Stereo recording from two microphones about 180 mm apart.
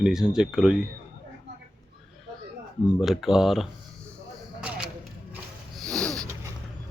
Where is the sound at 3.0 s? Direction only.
Centre (ahead or behind).